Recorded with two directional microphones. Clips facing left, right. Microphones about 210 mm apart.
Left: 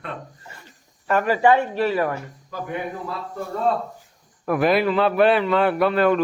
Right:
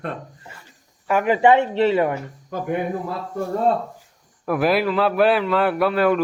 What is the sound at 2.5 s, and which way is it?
Speech, 50° right (ahead or behind).